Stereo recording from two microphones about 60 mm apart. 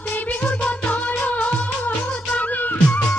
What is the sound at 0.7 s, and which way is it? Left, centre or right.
Music, left.